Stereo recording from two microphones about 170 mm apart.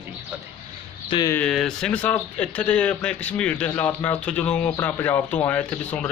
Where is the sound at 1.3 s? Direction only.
5° left (ahead or behind).